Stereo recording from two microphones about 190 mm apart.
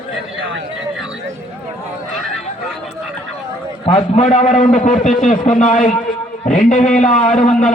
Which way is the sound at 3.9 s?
40° left (ahead or behind).